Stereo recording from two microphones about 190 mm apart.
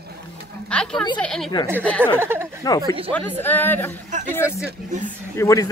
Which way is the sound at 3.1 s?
10° left (ahead or behind).